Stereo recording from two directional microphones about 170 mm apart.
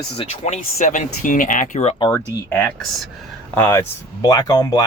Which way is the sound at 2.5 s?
5° left (ahead or behind).